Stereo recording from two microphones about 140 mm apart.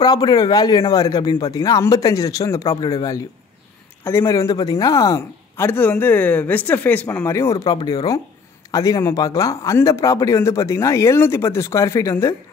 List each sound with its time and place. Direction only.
0.0 s speech: 30° left (ahead or behind)